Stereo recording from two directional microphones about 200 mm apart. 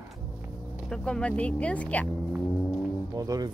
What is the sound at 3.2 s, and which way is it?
Music, 15° right (ahead or behind).